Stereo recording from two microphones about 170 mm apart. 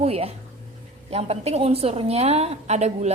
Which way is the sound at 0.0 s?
35° right (ahead or behind).